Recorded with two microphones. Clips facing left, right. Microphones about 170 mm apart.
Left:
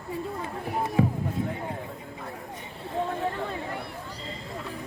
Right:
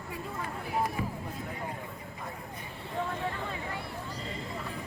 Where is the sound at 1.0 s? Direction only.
85° left.